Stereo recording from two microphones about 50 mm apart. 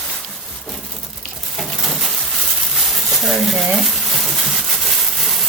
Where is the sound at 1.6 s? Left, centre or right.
Centre.